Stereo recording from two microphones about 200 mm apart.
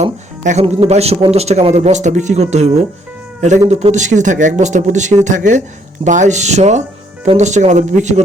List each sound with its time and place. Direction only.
0.0 s speech: 35° right (ahead or behind)